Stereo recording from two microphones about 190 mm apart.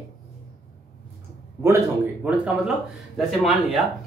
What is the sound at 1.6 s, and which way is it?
Speech, 10° right (ahead or behind).